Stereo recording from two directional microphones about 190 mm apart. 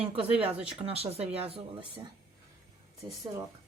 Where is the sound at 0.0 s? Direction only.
30° right (ahead or behind).